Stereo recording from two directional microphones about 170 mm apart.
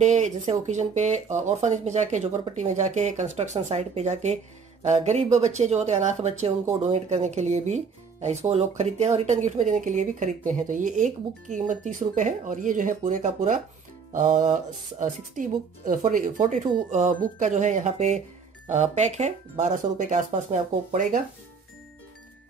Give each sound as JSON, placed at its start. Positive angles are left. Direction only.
{"t": 0.0, "sound": "speech", "side_deg": -45}